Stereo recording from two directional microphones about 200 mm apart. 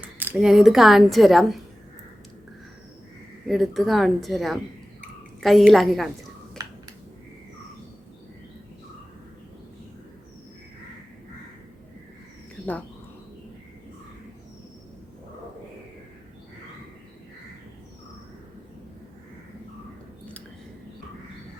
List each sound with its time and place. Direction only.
0.2 s a woman's voice: 5° right (ahead or behind)
3.4 s a woman's voice: centre (ahead or behind)
6.6 s a sound: 20° right (ahead or behind)